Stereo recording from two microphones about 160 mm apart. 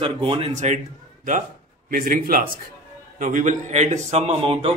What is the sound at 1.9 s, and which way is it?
A man's voice, 60° right (ahead or behind).